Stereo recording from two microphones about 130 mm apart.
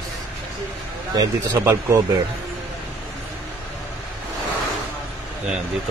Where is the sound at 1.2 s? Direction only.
25° right (ahead or behind).